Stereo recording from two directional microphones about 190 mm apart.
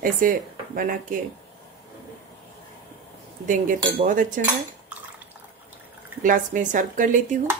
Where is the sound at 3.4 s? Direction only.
40° right (ahead or behind).